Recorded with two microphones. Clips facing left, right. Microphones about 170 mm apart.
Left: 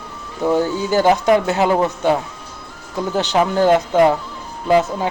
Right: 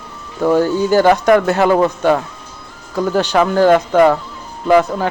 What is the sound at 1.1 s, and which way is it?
Speech, 65° right (ahead or behind).